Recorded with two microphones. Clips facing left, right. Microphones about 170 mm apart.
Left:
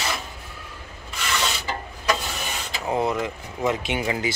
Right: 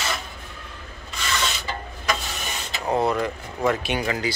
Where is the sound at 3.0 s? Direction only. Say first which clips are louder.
Right 2 dB; 20° left (ahead or behind).